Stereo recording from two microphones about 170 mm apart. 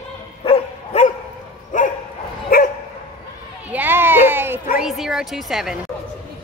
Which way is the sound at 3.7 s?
10° right (ahead or behind).